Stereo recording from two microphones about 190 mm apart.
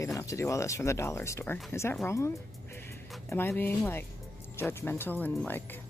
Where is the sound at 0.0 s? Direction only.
15° left (ahead or behind).